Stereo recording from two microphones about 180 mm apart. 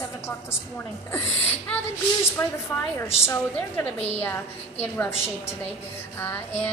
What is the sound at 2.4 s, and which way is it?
A woman's voice, 15° left (ahead or behind).